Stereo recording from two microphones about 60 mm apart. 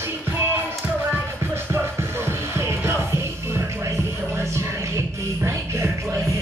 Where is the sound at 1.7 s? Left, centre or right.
Right.